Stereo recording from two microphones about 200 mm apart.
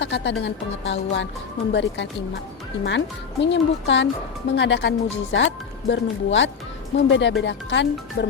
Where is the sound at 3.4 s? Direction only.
60° left (ahead or behind).